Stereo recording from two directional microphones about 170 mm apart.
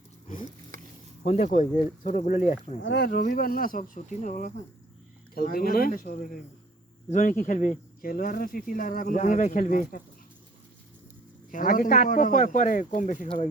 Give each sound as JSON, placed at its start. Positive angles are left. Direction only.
{"t": 1.2, "sound": "speech", "side_deg": 40}
{"t": 2.8, "sound": "speech", "side_deg": 70}
{"t": 5.3, "sound": "speech", "side_deg": 60}
{"t": 11.5, "sound": "speech", "side_deg": 55}